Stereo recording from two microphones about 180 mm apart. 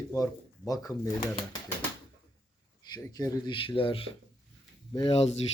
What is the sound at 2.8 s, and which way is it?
Speech, 20° left (ahead or behind).